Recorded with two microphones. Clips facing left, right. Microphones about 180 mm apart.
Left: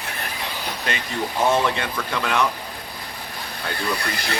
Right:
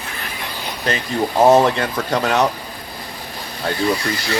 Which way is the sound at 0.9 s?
40° right (ahead or behind).